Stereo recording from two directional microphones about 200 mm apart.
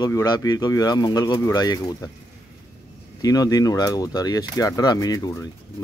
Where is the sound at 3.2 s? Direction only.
20° left (ahead or behind).